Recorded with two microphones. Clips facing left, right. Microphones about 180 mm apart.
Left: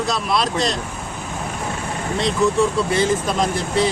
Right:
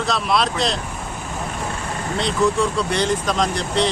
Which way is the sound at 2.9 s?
5° left (ahead or behind).